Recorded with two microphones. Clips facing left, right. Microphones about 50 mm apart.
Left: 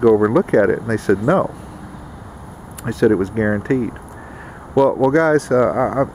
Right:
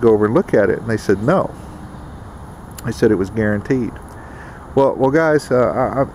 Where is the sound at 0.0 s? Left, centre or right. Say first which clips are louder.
Even; centre.